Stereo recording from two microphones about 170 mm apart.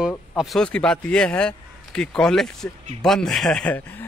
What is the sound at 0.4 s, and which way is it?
Speech, centre (ahead or behind).